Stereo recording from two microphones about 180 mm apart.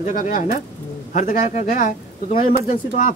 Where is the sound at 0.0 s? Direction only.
50° left (ahead or behind).